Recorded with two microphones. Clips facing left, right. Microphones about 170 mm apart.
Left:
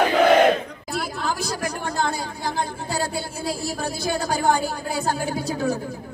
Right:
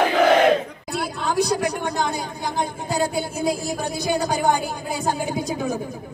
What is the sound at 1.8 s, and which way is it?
A man's voice, 15° right (ahead or behind).